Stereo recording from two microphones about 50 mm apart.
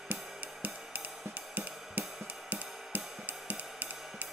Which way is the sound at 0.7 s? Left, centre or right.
Centre.